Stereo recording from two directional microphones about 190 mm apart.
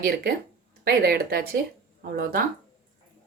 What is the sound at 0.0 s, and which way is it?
Speech, 50° right (ahead or behind).